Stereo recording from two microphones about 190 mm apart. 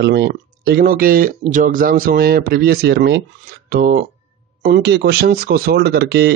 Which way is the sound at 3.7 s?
50° right (ahead or behind).